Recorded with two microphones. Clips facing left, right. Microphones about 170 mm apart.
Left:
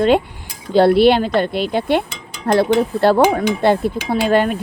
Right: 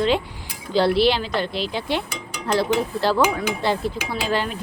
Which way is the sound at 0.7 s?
55° left (ahead or behind).